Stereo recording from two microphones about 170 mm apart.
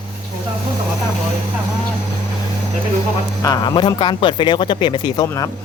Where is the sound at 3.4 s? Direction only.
25° left (ahead or behind).